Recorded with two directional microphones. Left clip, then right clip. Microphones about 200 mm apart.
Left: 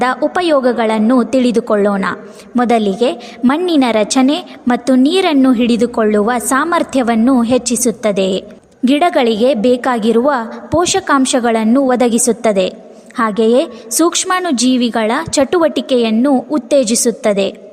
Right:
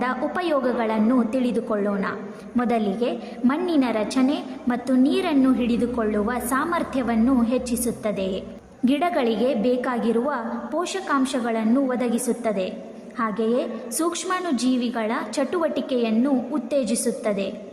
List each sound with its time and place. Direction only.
0.0 s a woman's voice: 45° left (ahead or behind)